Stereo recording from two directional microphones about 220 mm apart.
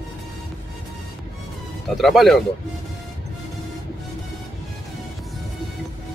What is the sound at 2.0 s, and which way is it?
Speech, centre (ahead or behind).